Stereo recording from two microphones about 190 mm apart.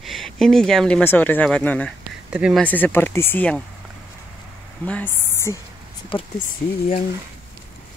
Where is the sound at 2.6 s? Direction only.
10° left (ahead or behind).